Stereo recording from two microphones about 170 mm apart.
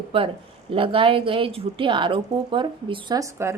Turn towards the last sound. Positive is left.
turn(degrees=-15)  # may be behind; listen again after turning